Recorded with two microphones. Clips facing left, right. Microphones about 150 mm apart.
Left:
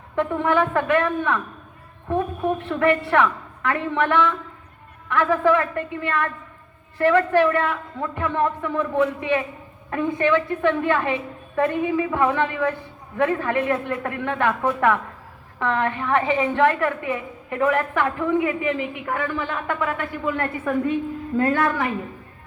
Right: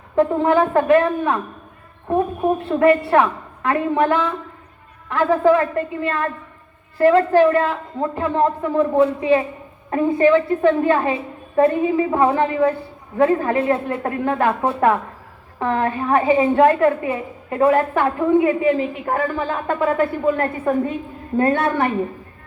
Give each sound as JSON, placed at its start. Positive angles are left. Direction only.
{"t": 0.2, "sound": "a woman's voice", "side_deg": -30}